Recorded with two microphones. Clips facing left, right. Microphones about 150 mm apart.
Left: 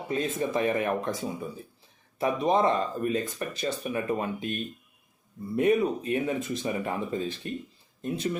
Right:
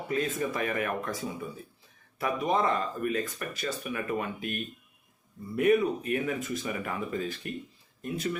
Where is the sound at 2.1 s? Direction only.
25° left (ahead or behind).